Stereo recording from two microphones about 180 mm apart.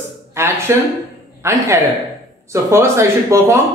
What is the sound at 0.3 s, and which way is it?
Speech, 15° right (ahead or behind).